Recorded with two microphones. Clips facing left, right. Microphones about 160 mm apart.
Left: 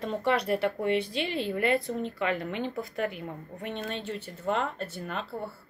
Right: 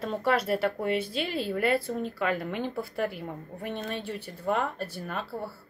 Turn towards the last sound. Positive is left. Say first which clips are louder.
# even
turn(degrees=-5)  # may be behind; listen again after turning